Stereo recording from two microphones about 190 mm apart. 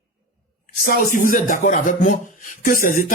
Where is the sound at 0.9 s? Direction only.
45° left (ahead or behind).